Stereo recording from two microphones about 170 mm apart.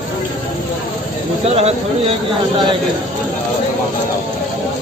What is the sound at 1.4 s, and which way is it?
Speech, 35° right (ahead or behind).